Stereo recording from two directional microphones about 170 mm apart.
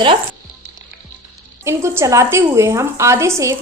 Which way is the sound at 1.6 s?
15° right (ahead or behind).